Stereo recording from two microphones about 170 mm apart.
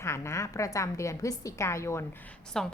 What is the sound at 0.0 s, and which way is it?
A woman's voice, 15° left (ahead or behind).